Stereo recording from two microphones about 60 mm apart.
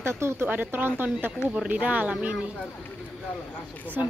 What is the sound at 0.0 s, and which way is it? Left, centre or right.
Speech, right.